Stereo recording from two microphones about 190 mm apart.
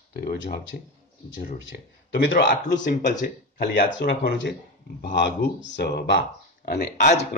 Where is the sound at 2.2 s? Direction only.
70° left (ahead or behind).